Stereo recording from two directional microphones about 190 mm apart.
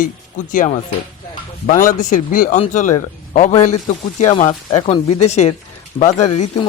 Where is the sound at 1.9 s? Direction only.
45° left (ahead or behind).